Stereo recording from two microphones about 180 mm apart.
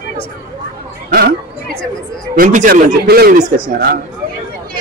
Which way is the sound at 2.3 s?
50° right (ahead or behind).